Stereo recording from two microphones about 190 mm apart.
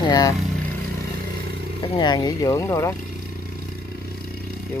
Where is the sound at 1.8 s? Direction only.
25° left (ahead or behind).